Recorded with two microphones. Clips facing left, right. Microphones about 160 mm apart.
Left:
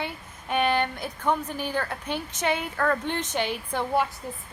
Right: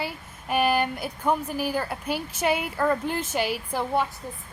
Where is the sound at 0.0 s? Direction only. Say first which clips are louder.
Right 1 dB; 5° right (ahead or behind).